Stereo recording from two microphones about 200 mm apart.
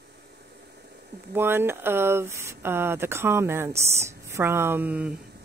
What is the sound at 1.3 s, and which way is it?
Speech, 10° right (ahead or behind).